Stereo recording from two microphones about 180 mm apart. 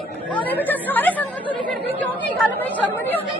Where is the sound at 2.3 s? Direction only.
10° left (ahead or behind).